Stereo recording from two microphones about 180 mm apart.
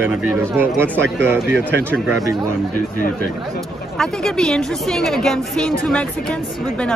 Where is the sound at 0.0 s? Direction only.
10° right (ahead or behind).